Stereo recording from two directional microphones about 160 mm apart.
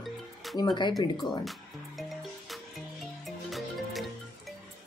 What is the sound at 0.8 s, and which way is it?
Speech, 30° left (ahead or behind).